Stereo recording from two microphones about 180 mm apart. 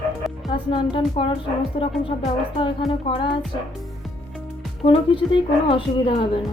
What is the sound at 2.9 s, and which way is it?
Speech, 30° left (ahead or behind).